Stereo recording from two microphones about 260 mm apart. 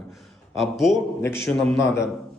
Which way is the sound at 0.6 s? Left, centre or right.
Centre.